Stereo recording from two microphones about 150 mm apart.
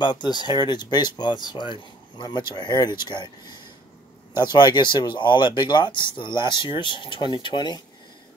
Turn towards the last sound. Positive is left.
turn(degrees=30)  # may be behind; listen again after turning